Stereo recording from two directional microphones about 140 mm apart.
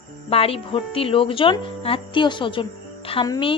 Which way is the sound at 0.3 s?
45° left (ahead or behind).